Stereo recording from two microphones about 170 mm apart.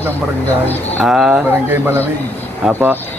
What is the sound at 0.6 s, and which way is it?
Speech, 10° left (ahead or behind).